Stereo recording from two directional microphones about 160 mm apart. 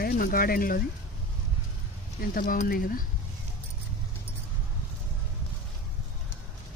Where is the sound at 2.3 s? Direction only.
60° left (ahead or behind).